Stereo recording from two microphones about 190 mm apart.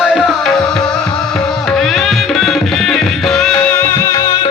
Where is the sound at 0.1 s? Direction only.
Centre (ahead or behind).